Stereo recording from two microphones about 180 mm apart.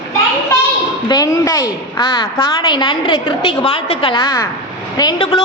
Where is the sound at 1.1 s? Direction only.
20° left (ahead or behind).